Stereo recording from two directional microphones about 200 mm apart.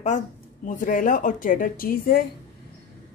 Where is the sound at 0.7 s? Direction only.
40° left (ahead or behind).